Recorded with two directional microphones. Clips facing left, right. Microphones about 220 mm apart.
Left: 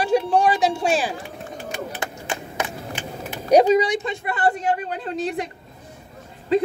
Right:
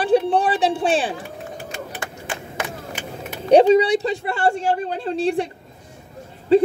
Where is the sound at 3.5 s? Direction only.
30° right (ahead or behind).